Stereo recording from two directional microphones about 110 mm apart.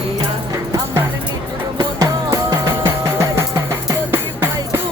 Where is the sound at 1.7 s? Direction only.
35° right (ahead or behind).